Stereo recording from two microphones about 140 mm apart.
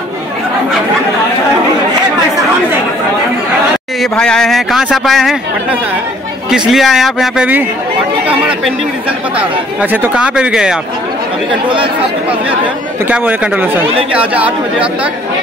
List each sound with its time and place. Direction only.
4.0 s speech: 5° left (ahead or behind)
6.7 s speech: centre (ahead or behind)
9.4 s speech: 10° right (ahead or behind)
11.7 s speech: 40° right (ahead or behind)
13.1 s speech: 10° right (ahead or behind)